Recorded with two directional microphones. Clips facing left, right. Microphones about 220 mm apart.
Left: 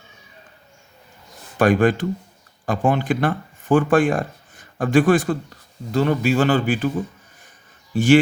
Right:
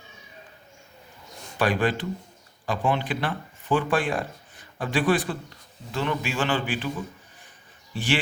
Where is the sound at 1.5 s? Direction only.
50° left (ahead or behind).